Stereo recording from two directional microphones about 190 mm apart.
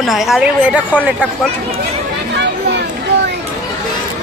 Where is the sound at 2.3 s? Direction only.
65° right (ahead or behind).